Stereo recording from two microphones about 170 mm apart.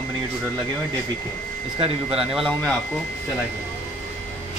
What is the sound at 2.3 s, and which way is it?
Speech, centre (ahead or behind).